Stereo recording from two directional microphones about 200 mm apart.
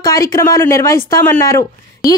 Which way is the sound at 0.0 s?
15° left (ahead or behind).